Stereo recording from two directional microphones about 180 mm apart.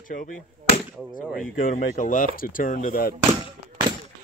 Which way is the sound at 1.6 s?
45° left (ahead or behind).